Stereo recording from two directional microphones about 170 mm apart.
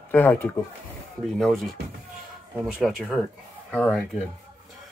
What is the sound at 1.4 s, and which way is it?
Speech, centre (ahead or behind).